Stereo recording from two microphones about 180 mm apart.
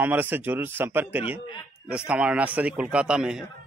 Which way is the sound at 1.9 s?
5° right (ahead or behind).